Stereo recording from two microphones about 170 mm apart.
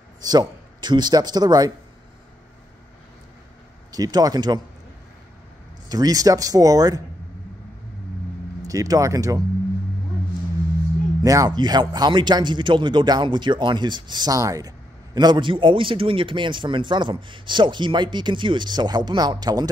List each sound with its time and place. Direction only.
0.2 s speech: 25° right (ahead or behind)
3.9 s a man's voice: 20° right (ahead or behind)
5.9 s a man's voice: 20° right (ahead or behind)
8.6 s a man's voice: 20° right (ahead or behind)
11.2 s a man's voice: 20° right (ahead or behind)